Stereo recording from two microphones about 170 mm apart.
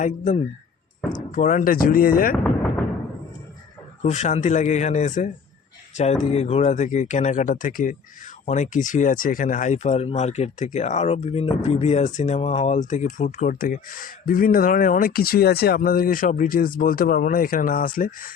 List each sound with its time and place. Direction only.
0.0 s speech: 45° left (ahead or behind)
2.3 s a sound: 5° left (ahead or behind)
4.0 s speech: 45° left (ahead or behind)